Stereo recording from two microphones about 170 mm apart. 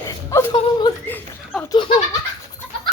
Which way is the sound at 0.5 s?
30° left (ahead or behind).